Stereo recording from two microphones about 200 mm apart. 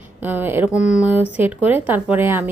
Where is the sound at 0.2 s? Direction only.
10° right (ahead or behind).